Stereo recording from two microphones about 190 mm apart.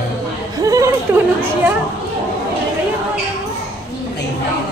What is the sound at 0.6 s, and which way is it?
Chatter, 20° right (ahead or behind).